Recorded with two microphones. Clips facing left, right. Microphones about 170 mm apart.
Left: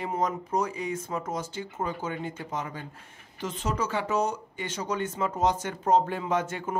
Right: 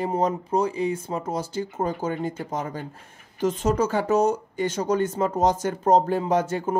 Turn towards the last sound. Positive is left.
turn(degrees=-35)  # may be behind; listen again after turning